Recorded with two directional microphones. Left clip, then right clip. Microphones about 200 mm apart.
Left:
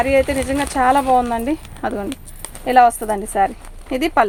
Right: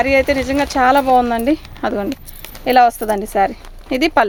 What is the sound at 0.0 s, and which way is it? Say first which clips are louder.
Speech: right 2 dB; 50° right (ahead or behind).